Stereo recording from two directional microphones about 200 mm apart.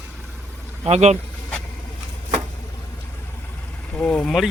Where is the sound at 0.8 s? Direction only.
35° right (ahead or behind).